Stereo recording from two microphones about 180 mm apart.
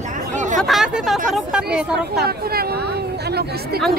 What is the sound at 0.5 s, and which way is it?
Speech, centre (ahead or behind).